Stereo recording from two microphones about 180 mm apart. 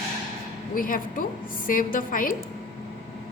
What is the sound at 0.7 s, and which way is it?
A woman's voice, 50° left (ahead or behind).